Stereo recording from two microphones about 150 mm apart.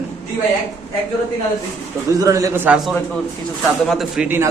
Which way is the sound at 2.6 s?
5° right (ahead or behind).